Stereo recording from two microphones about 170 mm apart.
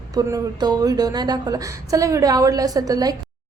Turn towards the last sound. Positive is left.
turn(degrees=-20)  # may be behind; listen again after turning